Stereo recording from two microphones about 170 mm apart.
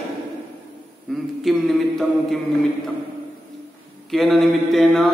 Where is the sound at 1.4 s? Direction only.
Centre (ahead or behind).